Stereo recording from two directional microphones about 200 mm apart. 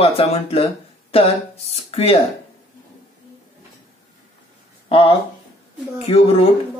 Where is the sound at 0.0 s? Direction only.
30° left (ahead or behind).